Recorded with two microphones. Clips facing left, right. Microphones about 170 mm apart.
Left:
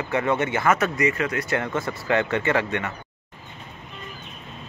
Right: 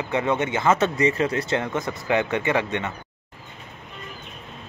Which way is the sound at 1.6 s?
15° right (ahead or behind).